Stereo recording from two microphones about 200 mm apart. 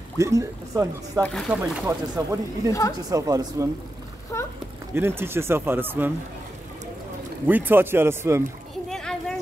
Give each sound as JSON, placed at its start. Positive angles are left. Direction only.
{"t": 0.2, "sound": "speech", "side_deg": -15}
{"t": 4.3, "sound": "speech", "side_deg": 15}
{"t": 4.9, "sound": "speech", "side_deg": -10}
{"t": 7.4, "sound": "speech", "side_deg": -10}
{"t": 8.8, "sound": "a sound", "side_deg": 5}